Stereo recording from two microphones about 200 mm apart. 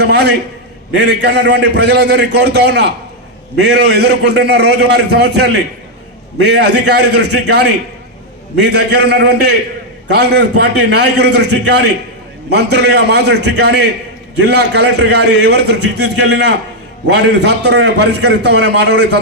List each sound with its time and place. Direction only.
0.0 s a man's voice: 55° right (ahead or behind)